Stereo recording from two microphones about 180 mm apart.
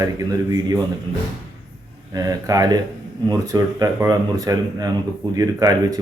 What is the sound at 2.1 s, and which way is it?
Speech, 20° right (ahead or behind).